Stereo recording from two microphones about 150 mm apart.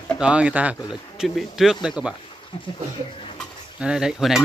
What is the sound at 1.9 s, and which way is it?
Speech, 5° right (ahead or behind).